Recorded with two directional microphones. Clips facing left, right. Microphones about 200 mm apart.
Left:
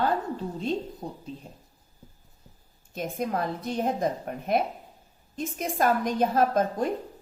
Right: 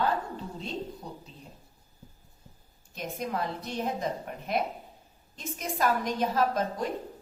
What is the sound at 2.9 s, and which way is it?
A woman's voice, 50° left (ahead or behind).